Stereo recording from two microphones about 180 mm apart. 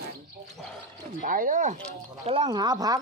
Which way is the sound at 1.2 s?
50° right (ahead or behind).